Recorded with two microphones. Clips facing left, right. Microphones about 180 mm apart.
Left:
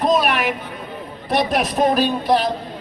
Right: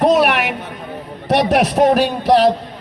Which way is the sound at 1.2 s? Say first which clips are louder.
Right 5 dB; 75° right (ahead or behind).